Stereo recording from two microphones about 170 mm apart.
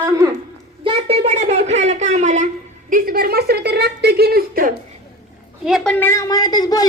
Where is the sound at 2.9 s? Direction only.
55° right (ahead or behind).